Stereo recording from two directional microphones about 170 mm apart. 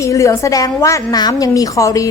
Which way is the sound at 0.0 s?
20° left (ahead or behind).